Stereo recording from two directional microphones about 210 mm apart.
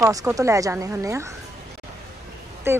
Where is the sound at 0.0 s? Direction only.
15° right (ahead or behind).